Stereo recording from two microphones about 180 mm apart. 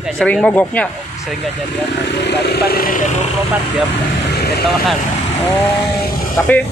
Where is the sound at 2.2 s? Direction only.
65° left (ahead or behind).